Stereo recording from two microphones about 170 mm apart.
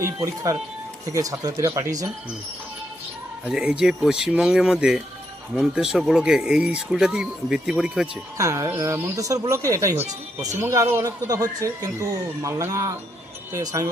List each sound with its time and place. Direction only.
0.0 s speech: 20° right (ahead or behind)
3.5 s speech: 5° right (ahead or behind)
8.4 s a man's voice: 20° right (ahead or behind)